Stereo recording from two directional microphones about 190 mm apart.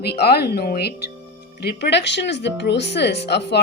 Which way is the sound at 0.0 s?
55° left (ahead or behind).